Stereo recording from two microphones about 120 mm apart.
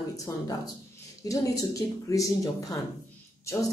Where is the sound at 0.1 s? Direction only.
30° left (ahead or behind).